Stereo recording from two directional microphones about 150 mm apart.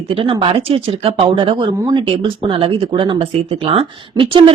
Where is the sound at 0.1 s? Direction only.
35° right (ahead or behind).